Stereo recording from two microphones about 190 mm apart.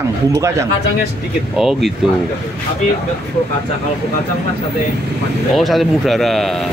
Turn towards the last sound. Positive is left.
turn(degrees=0)  # may be behind; listen again after turning